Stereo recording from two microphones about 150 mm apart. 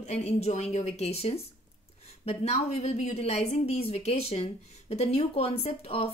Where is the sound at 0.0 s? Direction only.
45° left (ahead or behind).